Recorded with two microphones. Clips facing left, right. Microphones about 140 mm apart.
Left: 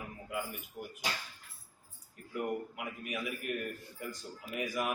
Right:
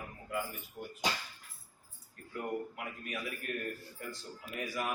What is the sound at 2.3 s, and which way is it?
A man's voice, 15° left (ahead or behind).